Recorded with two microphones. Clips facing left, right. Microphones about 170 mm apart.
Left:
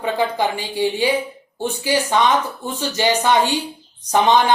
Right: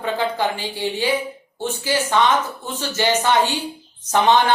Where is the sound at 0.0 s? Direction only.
15° left (ahead or behind).